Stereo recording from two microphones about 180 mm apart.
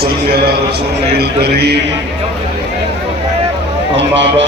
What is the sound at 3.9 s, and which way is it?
Speech, 85° right.